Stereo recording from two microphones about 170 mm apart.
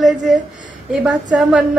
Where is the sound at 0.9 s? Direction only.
Centre (ahead or behind).